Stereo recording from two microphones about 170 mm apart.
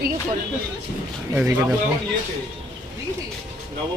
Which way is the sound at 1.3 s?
10° right (ahead or behind).